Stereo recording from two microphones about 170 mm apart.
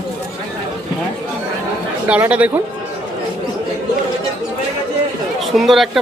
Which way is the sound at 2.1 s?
10° right (ahead or behind).